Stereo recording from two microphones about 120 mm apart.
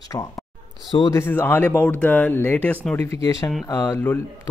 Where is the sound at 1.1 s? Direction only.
20° left (ahead or behind).